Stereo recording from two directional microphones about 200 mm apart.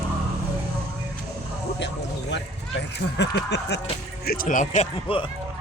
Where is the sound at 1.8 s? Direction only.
60° left (ahead or behind).